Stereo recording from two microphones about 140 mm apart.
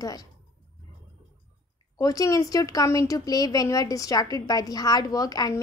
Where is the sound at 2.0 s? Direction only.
25° left (ahead or behind).